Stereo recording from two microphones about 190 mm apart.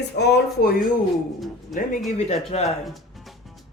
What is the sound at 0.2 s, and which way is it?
Speech, 60° left (ahead or behind).